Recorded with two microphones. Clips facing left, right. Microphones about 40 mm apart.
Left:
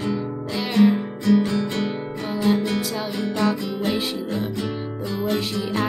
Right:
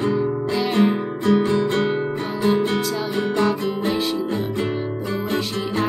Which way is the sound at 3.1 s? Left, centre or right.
Right.